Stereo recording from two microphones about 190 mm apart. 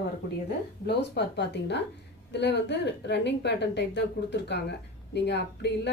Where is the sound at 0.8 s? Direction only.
65° left (ahead or behind).